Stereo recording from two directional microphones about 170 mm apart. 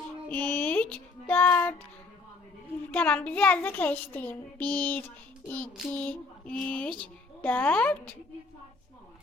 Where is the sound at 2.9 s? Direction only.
10° left (ahead or behind).